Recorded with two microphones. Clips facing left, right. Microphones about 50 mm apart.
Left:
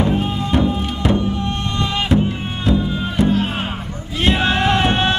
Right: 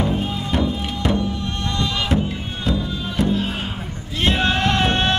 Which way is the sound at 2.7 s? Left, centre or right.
Left.